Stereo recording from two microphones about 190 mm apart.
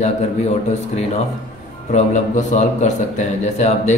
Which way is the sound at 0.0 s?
35° left (ahead or behind).